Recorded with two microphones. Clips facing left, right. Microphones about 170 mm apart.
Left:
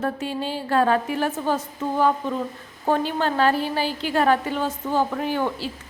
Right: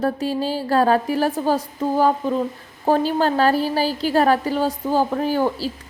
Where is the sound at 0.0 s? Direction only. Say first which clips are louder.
Right 5 dB; 35° right (ahead or behind).